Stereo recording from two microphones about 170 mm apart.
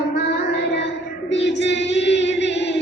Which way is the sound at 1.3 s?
90° left.